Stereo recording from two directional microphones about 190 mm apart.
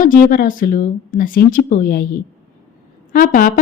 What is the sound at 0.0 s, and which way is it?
Speech, 45° left (ahead or behind).